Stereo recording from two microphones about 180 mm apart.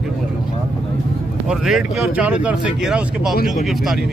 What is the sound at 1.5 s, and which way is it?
Speech, centre (ahead or behind).